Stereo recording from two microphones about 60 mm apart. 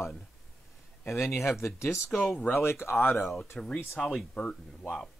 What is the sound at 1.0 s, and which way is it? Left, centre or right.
Speech, left.